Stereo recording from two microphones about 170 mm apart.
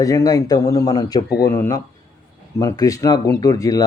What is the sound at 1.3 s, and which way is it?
Speech, 65° left (ahead or behind).